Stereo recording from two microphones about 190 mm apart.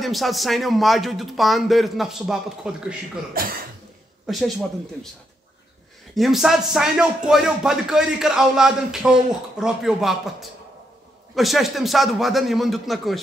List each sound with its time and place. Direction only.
0.0 s speech: centre (ahead or behind)
3.4 s cough: 50° right (ahead or behind)
4.3 s speech: centre (ahead or behind)
6.1 s speech: centre (ahead or behind)